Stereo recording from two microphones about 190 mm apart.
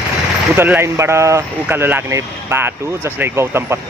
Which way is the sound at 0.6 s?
10° right (ahead or behind).